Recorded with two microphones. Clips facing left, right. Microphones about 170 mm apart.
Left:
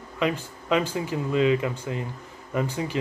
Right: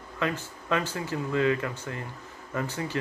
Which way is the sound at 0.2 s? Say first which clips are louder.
Left 4 dB; 15° left (ahead or behind).